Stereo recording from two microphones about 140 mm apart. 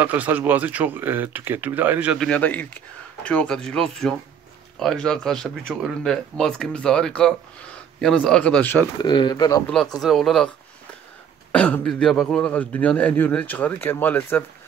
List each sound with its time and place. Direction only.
0.0 s speech: 10° right (ahead or behind)
2.1 s speech: 10° left (ahead or behind)
9.0 s speech: 30° left (ahead or behind)
9.9 s speech: centre (ahead or behind)
11.5 s speech: 10° left (ahead or behind)